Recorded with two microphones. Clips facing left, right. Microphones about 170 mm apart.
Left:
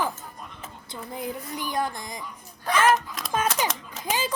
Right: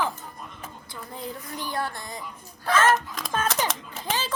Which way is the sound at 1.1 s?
15° left (ahead or behind).